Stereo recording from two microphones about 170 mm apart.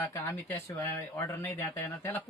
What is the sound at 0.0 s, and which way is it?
Speech, 15° left (ahead or behind).